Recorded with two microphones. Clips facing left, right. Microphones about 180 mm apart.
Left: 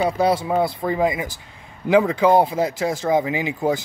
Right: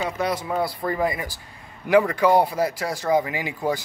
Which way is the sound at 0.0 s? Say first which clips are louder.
Left 6 dB; 30° left (ahead or behind).